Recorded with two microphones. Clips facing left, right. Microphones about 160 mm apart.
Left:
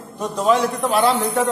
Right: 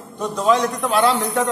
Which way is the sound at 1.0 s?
30° left (ahead or behind).